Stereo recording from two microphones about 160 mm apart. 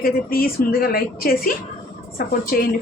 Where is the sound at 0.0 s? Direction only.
65° left (ahead or behind).